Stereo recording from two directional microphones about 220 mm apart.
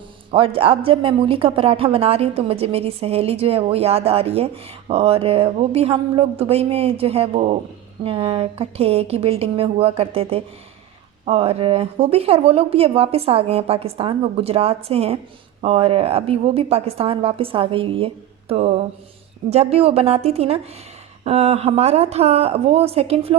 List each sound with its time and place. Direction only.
0.3 s speech: 25° right (ahead or behind)